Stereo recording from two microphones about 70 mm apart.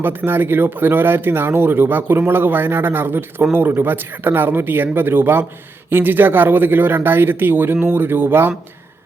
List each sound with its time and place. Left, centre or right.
0.0 s speech: right